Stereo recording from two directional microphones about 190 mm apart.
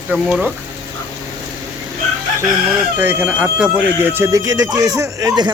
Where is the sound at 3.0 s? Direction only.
10° right (ahead or behind).